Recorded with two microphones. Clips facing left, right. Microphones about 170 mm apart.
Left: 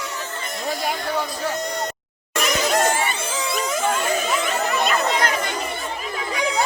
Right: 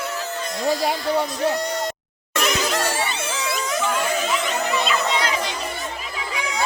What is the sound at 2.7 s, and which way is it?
Music, 45° left (ahead or behind).